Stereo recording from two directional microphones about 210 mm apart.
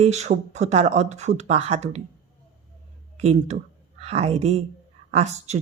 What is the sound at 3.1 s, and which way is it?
Speech, 30° right (ahead or behind).